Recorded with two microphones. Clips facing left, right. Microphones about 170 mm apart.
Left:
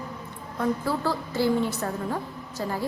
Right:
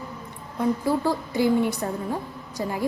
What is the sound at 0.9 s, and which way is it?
A woman's voice, 15° right (ahead or behind).